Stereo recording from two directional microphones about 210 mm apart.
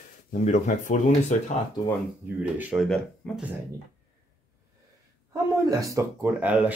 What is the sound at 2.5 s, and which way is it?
Speech, 5° right (ahead or behind).